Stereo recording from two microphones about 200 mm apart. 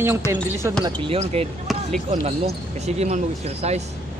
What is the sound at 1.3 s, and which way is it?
Speech, 30° right (ahead or behind).